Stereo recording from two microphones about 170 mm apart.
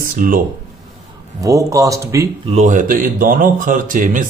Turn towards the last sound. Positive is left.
turn(degrees=-50)  # may be behind; listen again after turning